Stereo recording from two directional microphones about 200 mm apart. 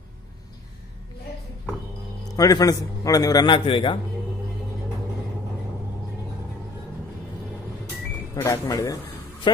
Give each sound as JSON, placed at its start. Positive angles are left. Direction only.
{"t": 2.3, "sound": "a man's voice", "side_deg": 20}
{"t": 8.4, "sound": "speech", "side_deg": 15}